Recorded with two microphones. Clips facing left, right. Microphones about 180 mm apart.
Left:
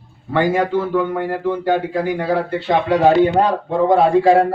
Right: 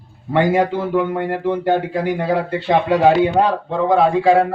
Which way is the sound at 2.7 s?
5° right (ahead or behind).